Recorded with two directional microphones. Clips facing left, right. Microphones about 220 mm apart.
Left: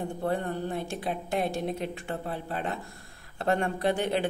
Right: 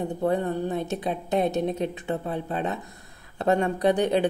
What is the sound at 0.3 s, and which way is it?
A woman's voice, 20° right (ahead or behind).